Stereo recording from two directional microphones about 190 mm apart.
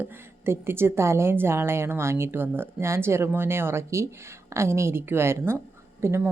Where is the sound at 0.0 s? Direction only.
10° right (ahead or behind).